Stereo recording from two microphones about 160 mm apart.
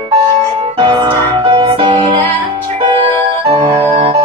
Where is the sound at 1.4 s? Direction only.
30° right (ahead or behind).